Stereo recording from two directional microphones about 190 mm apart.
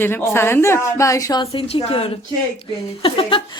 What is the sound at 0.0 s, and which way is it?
Speech, 10° left (ahead or behind).